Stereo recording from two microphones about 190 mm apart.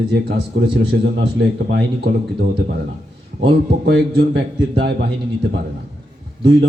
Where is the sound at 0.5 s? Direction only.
65° right (ahead or behind).